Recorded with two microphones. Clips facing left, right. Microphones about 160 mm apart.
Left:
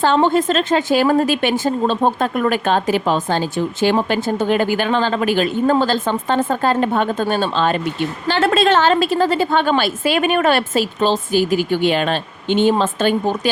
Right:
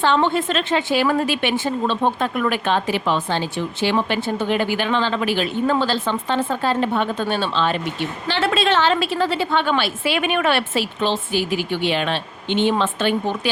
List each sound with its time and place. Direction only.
0.0 s a woman's voice: 40° left (ahead or behind)